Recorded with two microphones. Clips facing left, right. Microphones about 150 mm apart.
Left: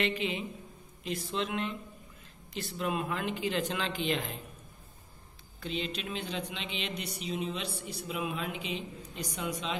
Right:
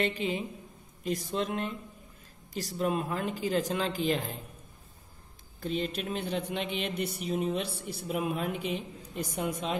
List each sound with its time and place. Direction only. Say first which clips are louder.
0.0 s a woman's voice: right 2 dB; 40° right (ahead or behind)
5.6 s a woman's voice: right 4 dB; 50° right (ahead or behind)